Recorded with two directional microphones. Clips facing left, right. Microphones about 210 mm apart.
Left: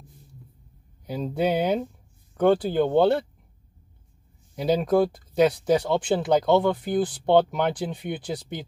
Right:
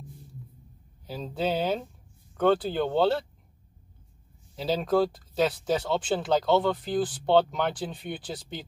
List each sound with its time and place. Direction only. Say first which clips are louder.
1.0 s speech: left 5 dB; 15° left (ahead or behind)
4.6 s speech: left 4 dB; 15° left (ahead or behind)